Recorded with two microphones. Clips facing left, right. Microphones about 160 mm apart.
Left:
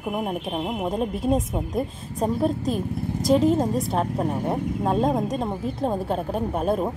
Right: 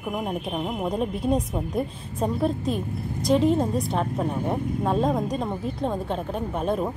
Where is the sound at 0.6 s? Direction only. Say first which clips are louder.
Left 1 dB; 15° left (ahead or behind).